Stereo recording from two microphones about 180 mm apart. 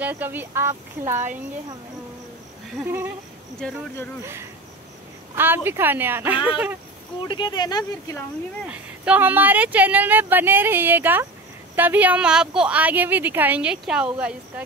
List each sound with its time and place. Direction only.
0.0 s speech: 10° right (ahead or behind)
2.8 s speech: 15° right (ahead or behind)
3.5 s speech: 5° left (ahead or behind)
4.2 s speech: 15° right (ahead or behind)
7.2 s speech: 25° left (ahead or behind)
8.6 s speech: 5° right (ahead or behind)